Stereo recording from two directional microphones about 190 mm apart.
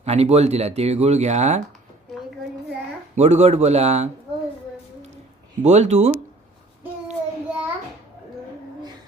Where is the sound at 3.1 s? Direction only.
35° right (ahead or behind).